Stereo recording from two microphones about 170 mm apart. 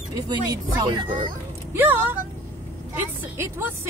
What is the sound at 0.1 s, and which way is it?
Speech, 20° right (ahead or behind).